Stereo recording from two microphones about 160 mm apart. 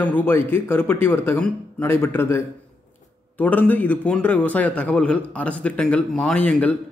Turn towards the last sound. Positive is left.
turn(degrees=10)  # may be behind; listen again after turning